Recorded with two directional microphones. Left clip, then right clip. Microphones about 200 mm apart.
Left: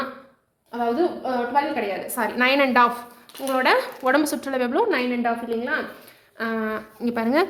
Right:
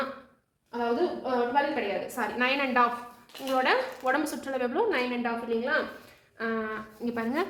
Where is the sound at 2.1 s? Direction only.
60° left (ahead or behind).